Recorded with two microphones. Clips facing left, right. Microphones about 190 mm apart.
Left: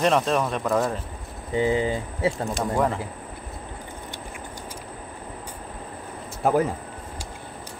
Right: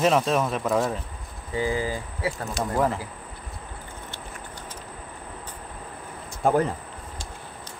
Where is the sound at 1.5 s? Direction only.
25° left (ahead or behind).